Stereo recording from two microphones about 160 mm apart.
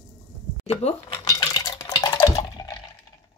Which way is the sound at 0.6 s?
40° left (ahead or behind).